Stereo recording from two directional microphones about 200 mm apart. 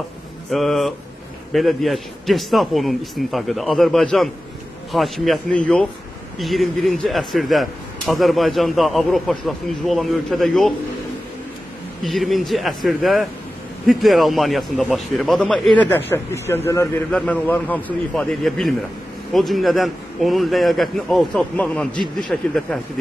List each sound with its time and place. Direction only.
0.5 s a man's voice: centre (ahead or behind)
12.0 s a man's voice: centre (ahead or behind)